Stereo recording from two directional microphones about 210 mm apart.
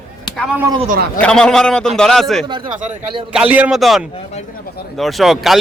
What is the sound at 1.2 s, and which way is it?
Speech, 5° left (ahead or behind).